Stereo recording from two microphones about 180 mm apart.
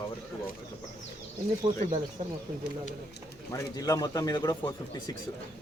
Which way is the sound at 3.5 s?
20° left (ahead or behind).